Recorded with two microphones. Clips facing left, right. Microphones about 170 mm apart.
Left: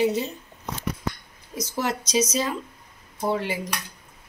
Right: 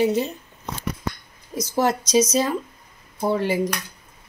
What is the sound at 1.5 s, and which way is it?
A woman's voice, 45° right (ahead or behind).